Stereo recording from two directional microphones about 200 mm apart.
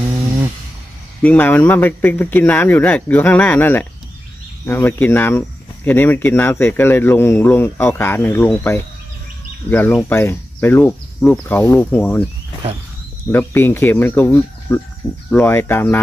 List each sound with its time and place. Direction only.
0.1 s a sound: 20° right (ahead or behind)
1.2 s a man's voice: 10° left (ahead or behind)
13.3 s a man's voice: 10° left (ahead or behind)